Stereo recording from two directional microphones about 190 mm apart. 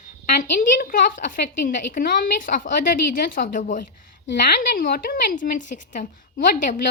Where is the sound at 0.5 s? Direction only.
50° left (ahead or behind).